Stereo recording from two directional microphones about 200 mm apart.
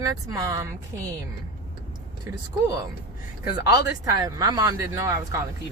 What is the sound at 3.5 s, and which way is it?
Speech, 20° right (ahead or behind).